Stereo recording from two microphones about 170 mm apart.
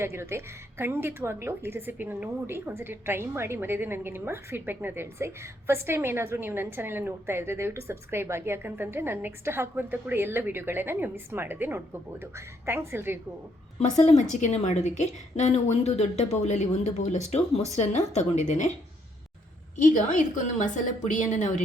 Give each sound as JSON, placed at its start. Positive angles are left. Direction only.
{"t": 0.0, "sound": "a woman's voice", "side_deg": -15}
{"t": 13.7, "sound": "a woman's voice", "side_deg": 40}
{"t": 19.7, "sound": "a woman's voice", "side_deg": 50}